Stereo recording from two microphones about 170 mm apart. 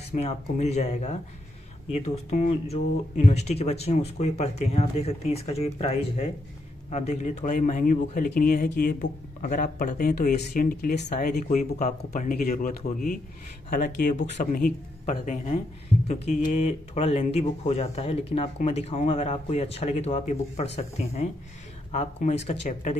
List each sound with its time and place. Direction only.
0.1 s a man's voice: 40° left (ahead or behind)